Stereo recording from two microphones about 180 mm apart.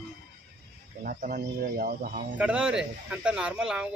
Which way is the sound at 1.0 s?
50° right (ahead or behind).